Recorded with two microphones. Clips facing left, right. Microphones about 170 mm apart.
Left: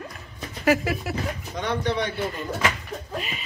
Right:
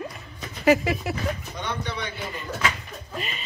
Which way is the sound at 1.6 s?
85° left.